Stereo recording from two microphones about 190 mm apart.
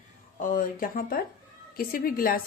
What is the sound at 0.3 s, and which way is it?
A woman's voice, 45° left (ahead or behind).